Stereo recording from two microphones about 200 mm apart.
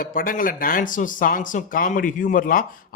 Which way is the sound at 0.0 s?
45° left (ahead or behind).